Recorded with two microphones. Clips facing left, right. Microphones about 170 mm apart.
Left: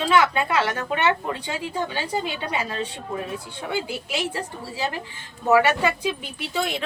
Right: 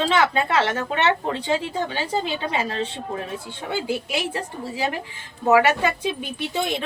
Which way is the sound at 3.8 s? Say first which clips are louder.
Right 3 dB; 20° right (ahead or behind).